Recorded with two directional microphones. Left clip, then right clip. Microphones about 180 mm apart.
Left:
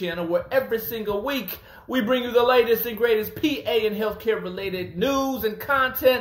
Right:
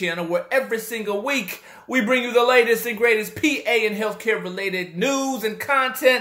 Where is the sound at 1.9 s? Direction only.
15° right (ahead or behind).